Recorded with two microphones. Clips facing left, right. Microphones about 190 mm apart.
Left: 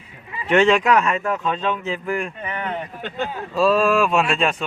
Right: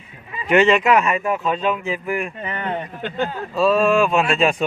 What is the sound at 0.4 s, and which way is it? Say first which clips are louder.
Speech: right 1 dB; 5° right (ahead or behind).